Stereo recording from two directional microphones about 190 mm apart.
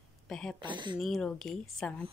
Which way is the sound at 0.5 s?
25° right (ahead or behind).